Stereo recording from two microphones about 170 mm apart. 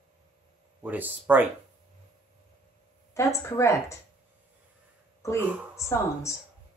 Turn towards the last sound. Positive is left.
turn(degrees=15)  # may be behind; listen again after turning